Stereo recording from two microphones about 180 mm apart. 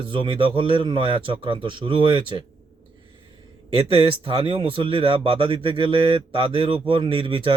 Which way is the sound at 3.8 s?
30° right (ahead or behind).